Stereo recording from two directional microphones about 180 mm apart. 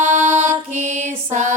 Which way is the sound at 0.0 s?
40° right (ahead or behind).